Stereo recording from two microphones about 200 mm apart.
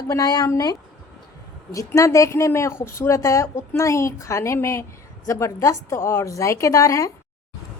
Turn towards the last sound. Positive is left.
turn(degrees=15)  # may be behind; listen again after turning